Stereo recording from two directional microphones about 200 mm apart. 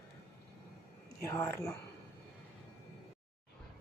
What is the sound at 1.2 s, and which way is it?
Speech, 15° left (ahead or behind).